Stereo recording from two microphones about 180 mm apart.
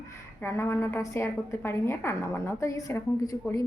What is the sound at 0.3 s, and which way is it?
A woman's voice, 15° left (ahead or behind).